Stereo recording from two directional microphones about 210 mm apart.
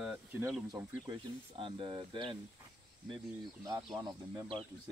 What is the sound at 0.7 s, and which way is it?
Speech, 15° right (ahead or behind).